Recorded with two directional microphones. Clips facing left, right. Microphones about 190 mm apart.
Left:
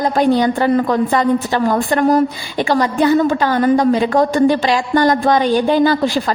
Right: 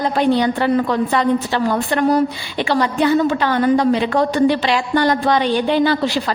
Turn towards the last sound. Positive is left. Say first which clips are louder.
# left 3 dB
turn(degrees=45)  # may be behind; listen again after turning